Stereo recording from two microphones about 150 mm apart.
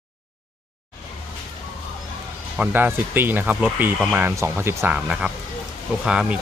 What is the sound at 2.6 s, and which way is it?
Speech, 10° right (ahead or behind).